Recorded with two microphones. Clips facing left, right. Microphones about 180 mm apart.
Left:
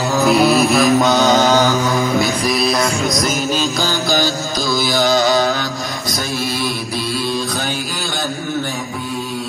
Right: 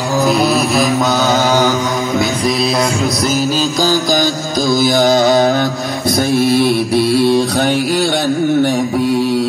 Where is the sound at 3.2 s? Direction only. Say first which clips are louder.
Right 3 dB; 35° right (ahead or behind); by 9.4 s 75° right (ahead or behind).